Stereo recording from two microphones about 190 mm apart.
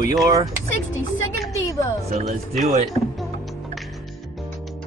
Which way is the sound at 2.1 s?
40° right (ahead or behind).